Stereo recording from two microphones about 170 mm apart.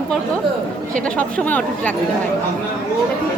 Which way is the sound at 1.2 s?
10° left (ahead or behind).